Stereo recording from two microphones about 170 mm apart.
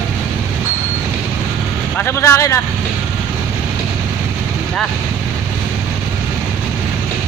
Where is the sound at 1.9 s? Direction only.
15° left (ahead or behind).